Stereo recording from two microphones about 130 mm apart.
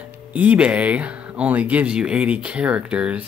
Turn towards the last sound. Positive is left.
turn(degrees=-10)  # may be behind; listen again after turning